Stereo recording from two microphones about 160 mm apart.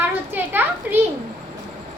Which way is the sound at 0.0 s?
10° right (ahead or behind).